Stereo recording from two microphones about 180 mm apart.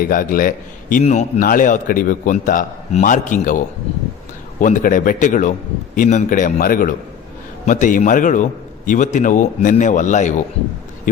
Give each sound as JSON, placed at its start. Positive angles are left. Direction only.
{"t": 0.0, "sound": "a man's voice", "side_deg": 50}
{"t": 4.6, "sound": "a man's voice", "side_deg": 45}